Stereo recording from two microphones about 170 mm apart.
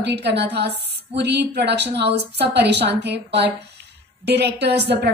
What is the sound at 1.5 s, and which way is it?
A woman's voice, 80° right.